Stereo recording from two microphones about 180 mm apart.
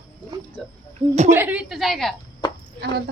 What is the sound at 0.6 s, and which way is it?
Speech, 5° left (ahead or behind).